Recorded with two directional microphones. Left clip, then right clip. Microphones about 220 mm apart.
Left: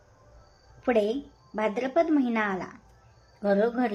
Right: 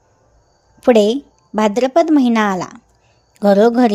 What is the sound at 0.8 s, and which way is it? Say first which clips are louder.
A woman's voice: right 13 dB; 40° right (ahead or behind).